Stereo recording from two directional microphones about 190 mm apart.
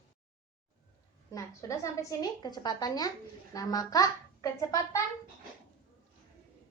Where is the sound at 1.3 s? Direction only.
15° left (ahead or behind).